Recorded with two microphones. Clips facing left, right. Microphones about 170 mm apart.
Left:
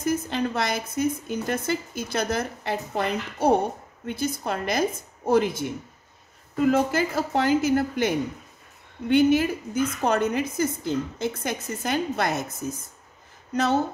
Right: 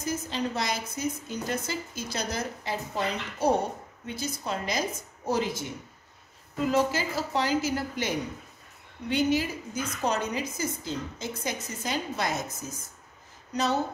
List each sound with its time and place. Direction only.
0.0 s a woman's voice: 55° left (ahead or behind)